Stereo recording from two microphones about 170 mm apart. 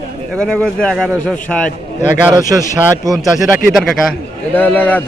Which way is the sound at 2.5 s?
5° right (ahead or behind).